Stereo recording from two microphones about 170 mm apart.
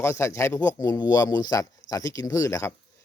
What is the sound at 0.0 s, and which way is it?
Speech, 15° left (ahead or behind).